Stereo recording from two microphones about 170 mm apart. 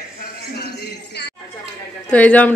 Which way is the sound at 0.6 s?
75° left (ahead or behind).